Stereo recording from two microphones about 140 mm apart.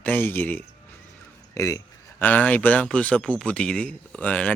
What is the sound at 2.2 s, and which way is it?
Speech, 10° left (ahead or behind).